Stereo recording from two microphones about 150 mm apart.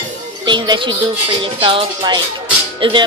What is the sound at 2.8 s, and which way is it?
Music, 35° right (ahead or behind).